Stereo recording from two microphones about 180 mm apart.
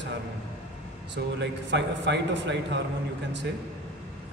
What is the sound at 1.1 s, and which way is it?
A man's voice, 80° right.